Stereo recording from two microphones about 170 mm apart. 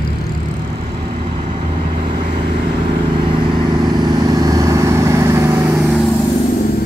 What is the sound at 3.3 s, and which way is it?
Vehicle, 25° right (ahead or behind).